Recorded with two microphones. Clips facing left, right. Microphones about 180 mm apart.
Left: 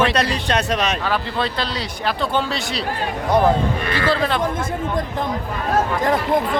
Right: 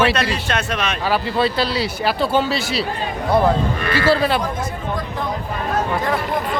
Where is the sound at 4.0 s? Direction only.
5° right (ahead or behind).